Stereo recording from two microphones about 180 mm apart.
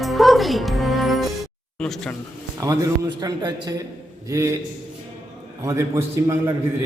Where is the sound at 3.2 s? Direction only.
20° right (ahead or behind).